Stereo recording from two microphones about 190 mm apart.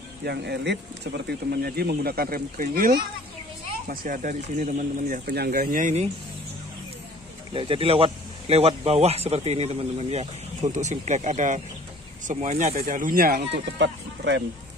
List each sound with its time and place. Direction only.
0.2 s speech: 60° right (ahead or behind); by 5.2 s 40° right (ahead or behind)
5.2 s speech: 55° right (ahead or behind); by 6.0 s 40° right (ahead or behind)
7.5 s speech: 30° right (ahead or behind); by 13.5 s 50° right (ahead or behind)
13.7 s speech: 70° right (ahead or behind)